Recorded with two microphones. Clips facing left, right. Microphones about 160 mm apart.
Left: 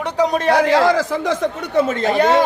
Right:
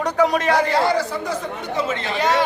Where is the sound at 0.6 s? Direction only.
90° left.